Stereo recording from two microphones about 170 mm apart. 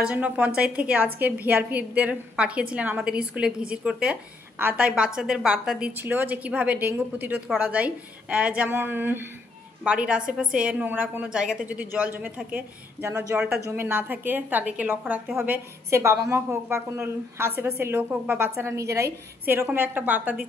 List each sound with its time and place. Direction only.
0.0 s a woman's voice: 5° right (ahead or behind)